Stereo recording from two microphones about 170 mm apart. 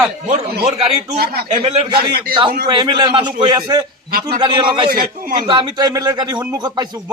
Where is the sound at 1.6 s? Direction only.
35° right (ahead or behind).